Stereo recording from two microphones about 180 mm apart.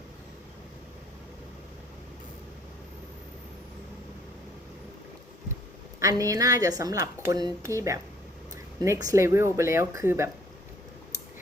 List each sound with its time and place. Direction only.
6.0 s a woman's voice: 20° right (ahead or behind)